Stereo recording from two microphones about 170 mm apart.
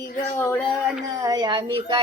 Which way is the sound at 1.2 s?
25° right (ahead or behind).